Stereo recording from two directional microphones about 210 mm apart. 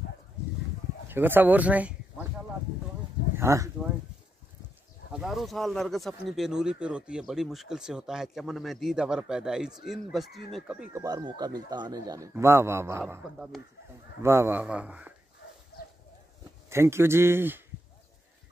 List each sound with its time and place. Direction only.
1.0 s speech: 10° right (ahead or behind)
3.3 s speech: 15° right (ahead or behind)
5.1 s speech: centre (ahead or behind)
15.7 s clip-clop: 45° left (ahead or behind)
16.6 s speech: 10° right (ahead or behind)